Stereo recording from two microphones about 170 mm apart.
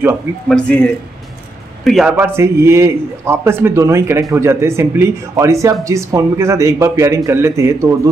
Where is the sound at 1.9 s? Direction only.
5° right (ahead or behind).